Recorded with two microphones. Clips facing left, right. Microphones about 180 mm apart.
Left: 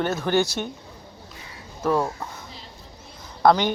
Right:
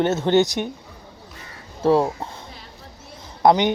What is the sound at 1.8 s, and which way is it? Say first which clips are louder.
Speech: right 5 dB; 30° right (ahead or behind).